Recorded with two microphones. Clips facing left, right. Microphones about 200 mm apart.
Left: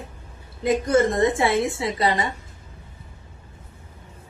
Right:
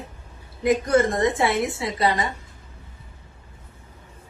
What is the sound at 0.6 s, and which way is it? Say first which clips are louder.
A woman's voice: even; 25° left (ahead or behind).